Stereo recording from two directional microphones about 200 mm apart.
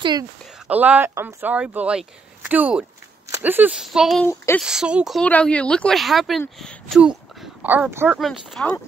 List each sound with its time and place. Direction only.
0.0 s speech: 20° right (ahead or behind)
0.7 s speech: 10° right (ahead or behind)
8.2 s speech: centre (ahead or behind)